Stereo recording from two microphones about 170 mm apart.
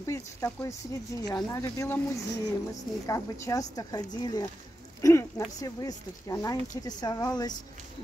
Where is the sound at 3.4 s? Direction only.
20° left (ahead or behind).